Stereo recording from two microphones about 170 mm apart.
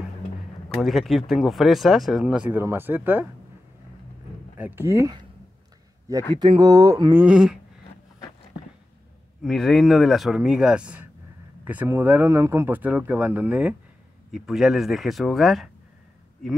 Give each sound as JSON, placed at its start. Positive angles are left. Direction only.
{"t": 0.7, "sound": "speech", "side_deg": 0}
{"t": 4.6, "sound": "speech", "side_deg": -10}
{"t": 6.3, "sound": "speech", "side_deg": -25}
{"t": 7.2, "sound": "speech", "side_deg": -5}
{"t": 9.4, "sound": "speech", "side_deg": 0}